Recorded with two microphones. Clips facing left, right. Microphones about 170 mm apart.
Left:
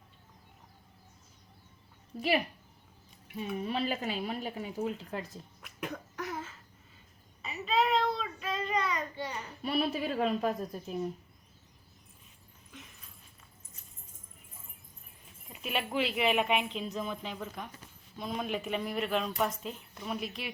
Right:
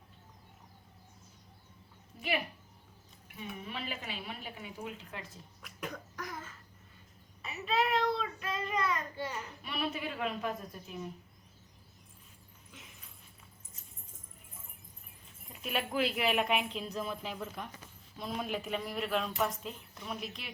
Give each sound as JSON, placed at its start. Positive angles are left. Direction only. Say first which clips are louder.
{"t": 3.6, "sound": "a woman's voice", "louder": "left 10 dB", "side_deg": 35}
{"t": 5.6, "sound": "cough", "louder": "left 2 dB", "side_deg": 5}
{"t": 7.4, "sound": "a sound", "louder": "left 2 dB", "side_deg": 0}
{"t": 9.6, "sound": "a child's voice", "louder": "left 7 dB", "side_deg": 35}
{"t": 15.6, "sound": "speech", "louder": "left 1 dB", "side_deg": 0}